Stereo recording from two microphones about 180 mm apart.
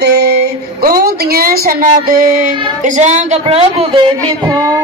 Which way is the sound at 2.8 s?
40° right (ahead or behind).